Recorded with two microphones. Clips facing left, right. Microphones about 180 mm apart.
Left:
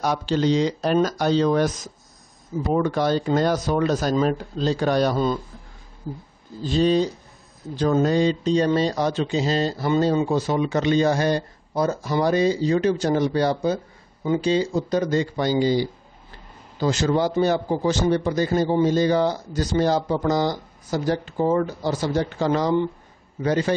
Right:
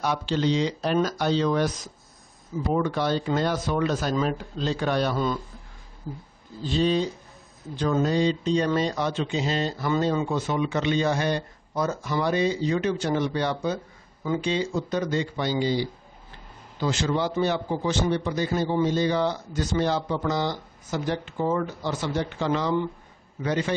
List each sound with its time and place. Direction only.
0.0 s speech: 40° left (ahead or behind)
6.6 s speech: 40° left (ahead or behind)
14.2 s speech: 25° left (ahead or behind)
14.5 s speech: 35° left (ahead or behind)